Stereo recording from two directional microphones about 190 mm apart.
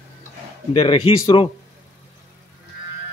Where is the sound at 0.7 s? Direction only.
30° left (ahead or behind).